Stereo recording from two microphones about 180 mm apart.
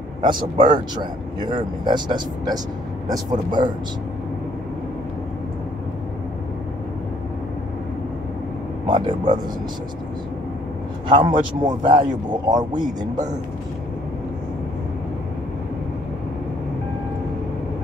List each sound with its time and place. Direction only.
0.2 s speech: 25° right (ahead or behind)
8.8 s speech: 25° right (ahead or behind)
11.1 s speech: 25° right (ahead or behind)